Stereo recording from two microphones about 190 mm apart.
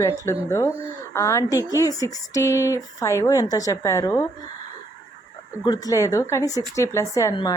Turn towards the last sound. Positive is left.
turn(degrees=15)  # may be behind; listen again after turning